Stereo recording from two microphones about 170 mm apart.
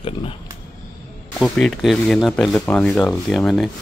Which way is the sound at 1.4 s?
Centre (ahead or behind).